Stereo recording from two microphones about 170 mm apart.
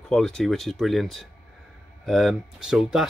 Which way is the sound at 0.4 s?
Centre (ahead or behind).